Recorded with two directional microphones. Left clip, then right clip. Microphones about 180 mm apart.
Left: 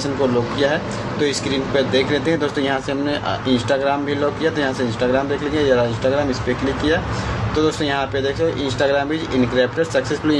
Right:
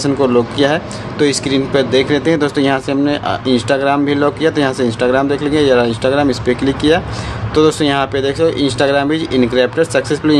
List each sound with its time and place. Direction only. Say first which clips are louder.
0.0 s speech: right 6 dB; 40° right (ahead or behind)
7.5 s speech: right 7 dB; 45° right (ahead or behind)